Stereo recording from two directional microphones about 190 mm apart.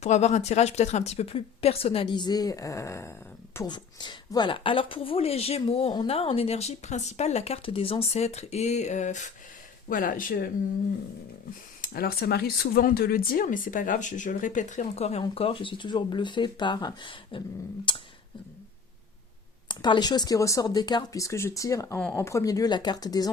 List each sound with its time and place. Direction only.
0.0 s speech: 35° left (ahead or behind)
11.8 s speech: 50° left (ahead or behind); by 18.0 s 25° left (ahead or behind)
19.6 s speech: 25° left (ahead or behind)